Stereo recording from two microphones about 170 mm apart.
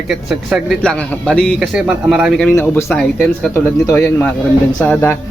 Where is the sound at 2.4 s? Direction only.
10° left (ahead or behind).